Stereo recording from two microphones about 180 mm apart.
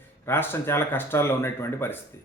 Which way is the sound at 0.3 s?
10° left (ahead or behind).